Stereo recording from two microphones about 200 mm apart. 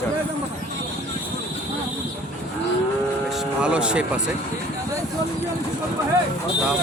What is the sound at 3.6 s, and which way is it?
Speech, 5° right (ahead or behind).